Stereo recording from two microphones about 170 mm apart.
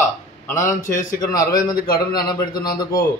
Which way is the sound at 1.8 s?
65° left (ahead or behind).